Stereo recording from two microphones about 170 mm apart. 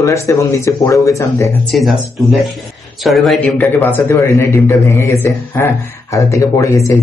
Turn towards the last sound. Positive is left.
turn(degrees=20)  # may be behind; listen again after turning